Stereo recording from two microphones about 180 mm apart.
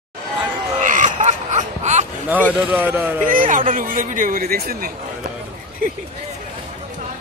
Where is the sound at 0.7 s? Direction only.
45° right (ahead or behind).